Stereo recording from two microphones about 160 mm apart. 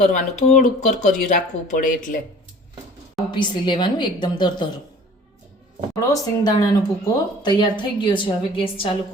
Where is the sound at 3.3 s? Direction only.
30° left (ahead or behind).